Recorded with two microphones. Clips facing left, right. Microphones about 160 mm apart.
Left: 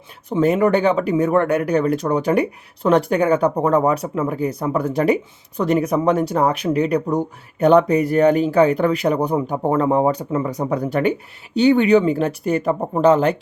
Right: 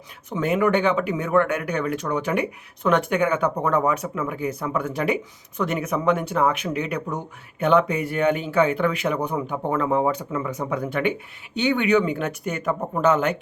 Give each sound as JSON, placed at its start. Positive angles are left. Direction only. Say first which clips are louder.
{"t": 0.3, "sound": "speech", "louder": "left 5 dB", "side_deg": 35}